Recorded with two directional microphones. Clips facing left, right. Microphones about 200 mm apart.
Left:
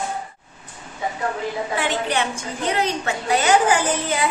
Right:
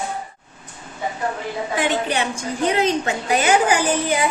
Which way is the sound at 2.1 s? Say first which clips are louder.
Right 1 dB; 20° right (ahead or behind).